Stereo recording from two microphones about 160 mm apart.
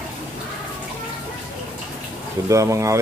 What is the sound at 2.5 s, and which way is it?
Speech, 20° right (ahead or behind).